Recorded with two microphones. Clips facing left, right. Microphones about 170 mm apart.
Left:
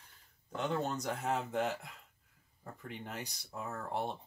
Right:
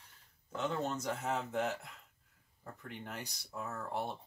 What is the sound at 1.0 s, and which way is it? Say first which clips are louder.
Speech: even; 10° left (ahead or behind).